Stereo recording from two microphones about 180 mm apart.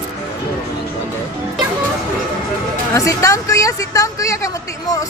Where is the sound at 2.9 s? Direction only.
20° left (ahead or behind).